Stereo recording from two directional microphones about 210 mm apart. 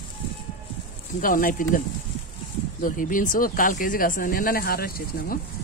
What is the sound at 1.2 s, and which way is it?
Speech, 40° left (ahead or behind).